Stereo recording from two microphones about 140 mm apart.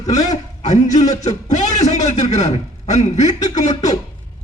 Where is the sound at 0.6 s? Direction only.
55° left (ahead or behind).